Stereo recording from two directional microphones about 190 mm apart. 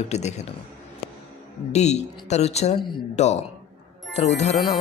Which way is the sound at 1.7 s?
35° left (ahead or behind).